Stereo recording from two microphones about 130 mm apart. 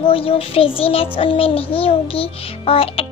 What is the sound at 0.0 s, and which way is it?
A child's voice, 45° left (ahead or behind).